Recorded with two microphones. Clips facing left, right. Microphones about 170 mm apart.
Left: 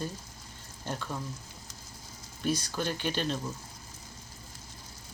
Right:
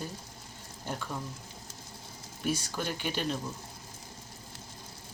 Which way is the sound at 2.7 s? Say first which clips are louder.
Left 2 dB; 10° right (ahead or behind).